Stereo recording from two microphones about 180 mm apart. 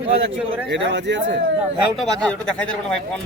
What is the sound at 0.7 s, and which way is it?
Speech, 80° right.